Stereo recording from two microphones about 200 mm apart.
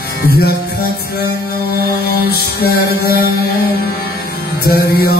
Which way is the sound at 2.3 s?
50° left (ahead or behind).